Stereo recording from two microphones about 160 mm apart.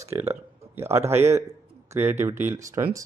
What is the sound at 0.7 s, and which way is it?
A man's voice, 15° right (ahead or behind).